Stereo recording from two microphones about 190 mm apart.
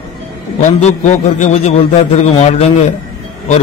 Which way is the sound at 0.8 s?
35° left (ahead or behind).